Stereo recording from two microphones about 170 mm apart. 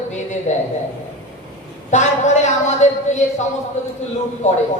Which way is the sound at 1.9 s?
45° left (ahead or behind).